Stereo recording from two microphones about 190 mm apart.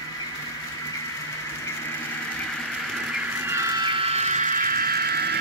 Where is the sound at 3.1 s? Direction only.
15° right (ahead or behind).